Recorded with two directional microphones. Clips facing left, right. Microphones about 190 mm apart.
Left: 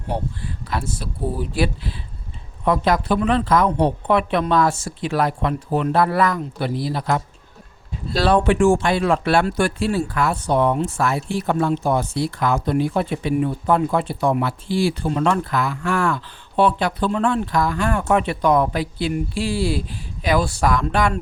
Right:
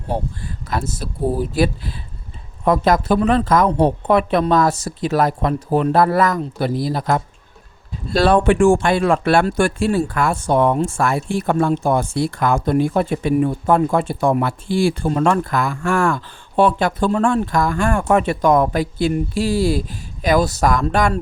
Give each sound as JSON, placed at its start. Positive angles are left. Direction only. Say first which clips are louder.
{"t": 0.1, "sound": "speech", "louder": "right 2 dB", "side_deg": -45}
{"t": 8.1, "sound": "speech", "louder": "right 3 dB", "side_deg": -55}